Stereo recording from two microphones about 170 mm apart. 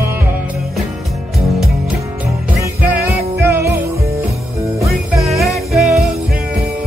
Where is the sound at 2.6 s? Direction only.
10° right (ahead or behind).